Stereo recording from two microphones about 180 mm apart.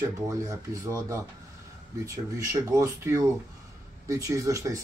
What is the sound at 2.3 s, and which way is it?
Speech, 15° right (ahead or behind).